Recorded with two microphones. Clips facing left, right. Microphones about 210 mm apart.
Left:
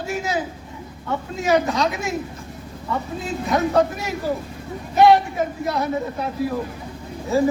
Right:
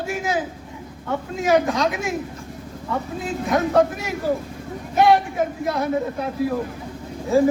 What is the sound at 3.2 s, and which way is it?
A man's voice, 50° right (ahead or behind).